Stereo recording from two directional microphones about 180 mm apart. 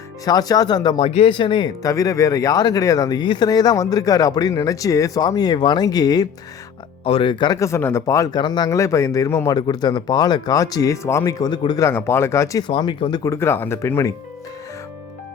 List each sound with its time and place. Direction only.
0.3 s speech: 20° left (ahead or behind)
11.9 s speech: 15° left (ahead or behind)